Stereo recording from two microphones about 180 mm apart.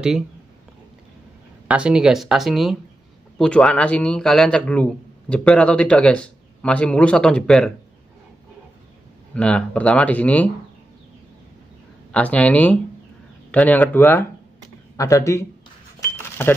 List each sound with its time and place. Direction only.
1.7 s a man's voice: 5° right (ahead or behind)
9.3 s speech: 5° left (ahead or behind)
12.1 s speech: 10° left (ahead or behind)
16.2 s a sound: 10° left (ahead or behind)